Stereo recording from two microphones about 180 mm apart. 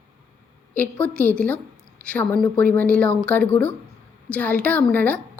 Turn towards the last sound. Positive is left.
turn(degrees=10)  # may be behind; listen again after turning